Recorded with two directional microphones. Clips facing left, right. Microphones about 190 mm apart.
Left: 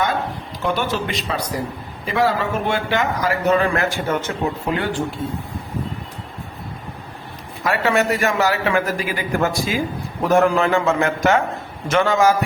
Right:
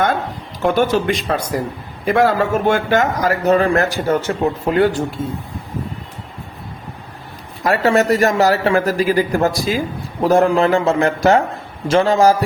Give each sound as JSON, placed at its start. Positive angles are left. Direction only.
{"t": 0.6, "sound": "speech", "side_deg": -45}
{"t": 7.6, "sound": "speech", "side_deg": -40}